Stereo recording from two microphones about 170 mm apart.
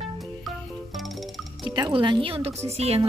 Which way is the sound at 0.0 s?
Centre (ahead or behind).